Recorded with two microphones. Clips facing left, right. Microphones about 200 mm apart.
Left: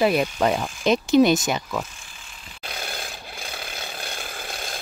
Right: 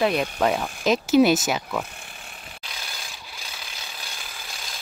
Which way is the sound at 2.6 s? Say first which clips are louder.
Left 9 dB; 55° left (ahead or behind).